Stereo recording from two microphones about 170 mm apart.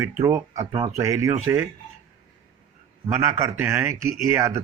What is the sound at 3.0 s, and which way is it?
Speech, 15° right (ahead or behind).